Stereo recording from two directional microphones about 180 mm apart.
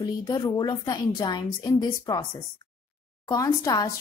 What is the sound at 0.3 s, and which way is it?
Speech, 20° left (ahead or behind).